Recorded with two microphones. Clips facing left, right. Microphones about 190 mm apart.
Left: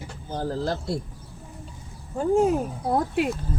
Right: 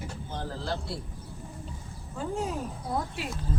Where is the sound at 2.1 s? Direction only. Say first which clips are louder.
Left 11 dB; 50° left (ahead or behind).